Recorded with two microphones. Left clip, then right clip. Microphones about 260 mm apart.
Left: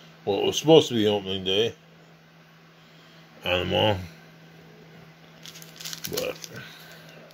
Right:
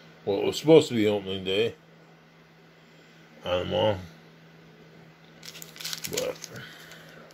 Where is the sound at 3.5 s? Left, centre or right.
Left.